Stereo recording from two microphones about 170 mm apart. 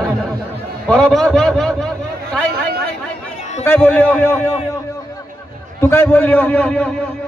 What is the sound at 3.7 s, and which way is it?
Speech, 10° left (ahead or behind).